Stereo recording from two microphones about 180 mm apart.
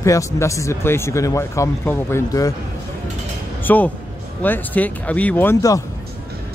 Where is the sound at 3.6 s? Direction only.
10° left (ahead or behind).